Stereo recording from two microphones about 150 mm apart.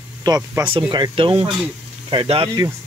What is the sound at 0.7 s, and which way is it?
Speech, 35° right (ahead or behind).